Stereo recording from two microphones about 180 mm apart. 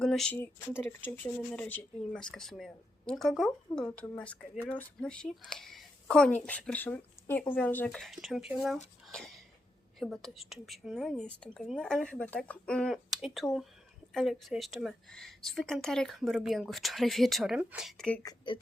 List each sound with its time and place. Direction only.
0.0 s speech: 5° left (ahead or behind)
18.2 s speech: 25° left (ahead or behind)